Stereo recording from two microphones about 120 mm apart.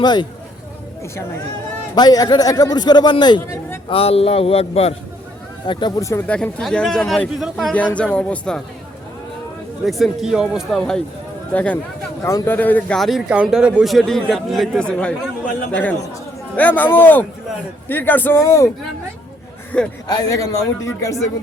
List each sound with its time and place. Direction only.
0.0 s a man's voice: 35° left (ahead or behind)
2.0 s a man's voice: 35° left (ahead or behind)
3.4 s a man's voice: 20° left (ahead or behind)
3.8 s speech: 55° left (ahead or behind)
5.7 s a man's voice: 40° left (ahead or behind)
6.0 s a man's voice: 25° left (ahead or behind)
6.2 s a man's voice: 10° left (ahead or behind)
9.8 s a man's voice: centre (ahead or behind)
12.2 s speech: 25° left (ahead or behind)
13.0 s a man's voice: centre (ahead or behind); by 18.7 s 25° left (ahead or behind)
19.7 s speech: 10° left (ahead or behind)
20.1 s a man's voice: 30° left (ahead or behind)